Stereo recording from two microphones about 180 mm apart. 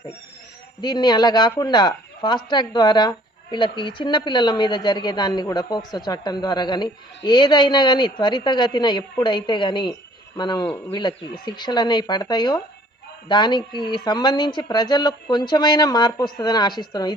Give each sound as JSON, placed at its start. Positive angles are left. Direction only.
{"t": 0.8, "sound": "speech", "side_deg": 25}